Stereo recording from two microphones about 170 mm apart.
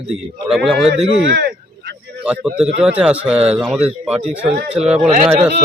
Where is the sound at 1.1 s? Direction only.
75° right (ahead or behind).